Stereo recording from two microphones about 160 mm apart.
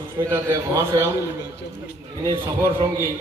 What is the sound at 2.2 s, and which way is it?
Speech, 15° right (ahead or behind).